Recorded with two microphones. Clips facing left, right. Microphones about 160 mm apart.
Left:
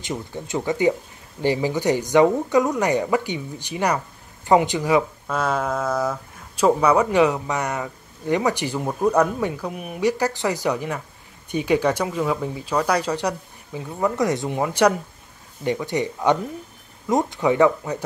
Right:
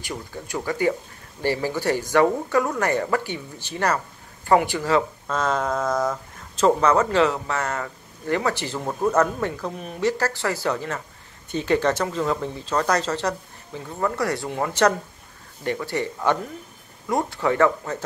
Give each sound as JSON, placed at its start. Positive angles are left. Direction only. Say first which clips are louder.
{"t": 0.0, "sound": "speech", "louder": "left 4 dB", "side_deg": 20}